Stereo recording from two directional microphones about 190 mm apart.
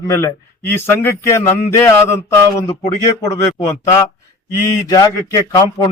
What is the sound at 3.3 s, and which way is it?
A man's voice, 15° left (ahead or behind).